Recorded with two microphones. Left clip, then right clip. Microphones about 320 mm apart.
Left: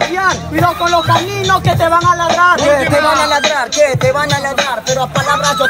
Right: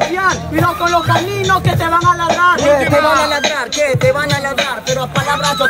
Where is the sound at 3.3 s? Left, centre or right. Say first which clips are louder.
Left 3 dB; centre.